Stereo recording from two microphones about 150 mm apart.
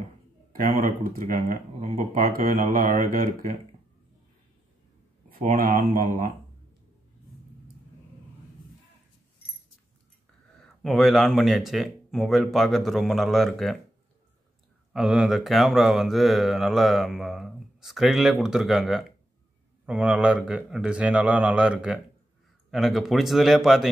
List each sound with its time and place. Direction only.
0.5 s speech: 70° right (ahead or behind)
5.4 s speech: 70° right (ahead or behind)
10.6 s speech: centre (ahead or behind)
14.9 s a man's voice: 5° right (ahead or behind)